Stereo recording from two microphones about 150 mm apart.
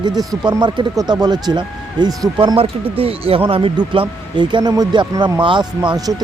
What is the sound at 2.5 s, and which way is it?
Speech, 40° right (ahead or behind).